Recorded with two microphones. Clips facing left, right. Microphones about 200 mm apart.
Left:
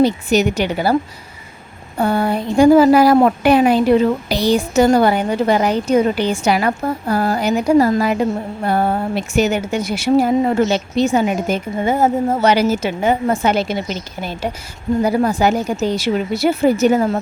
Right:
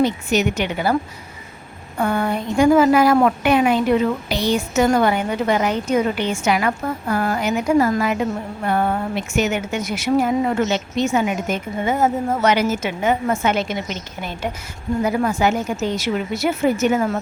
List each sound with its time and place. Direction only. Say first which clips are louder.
0.0 s a woman's voice: left 4 dB; 35° left (ahead or behind)
2.0 s a woman's voice: left 3 dB; 35° left (ahead or behind)